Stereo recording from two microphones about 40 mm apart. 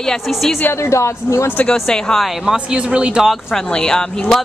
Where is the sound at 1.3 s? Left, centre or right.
Left.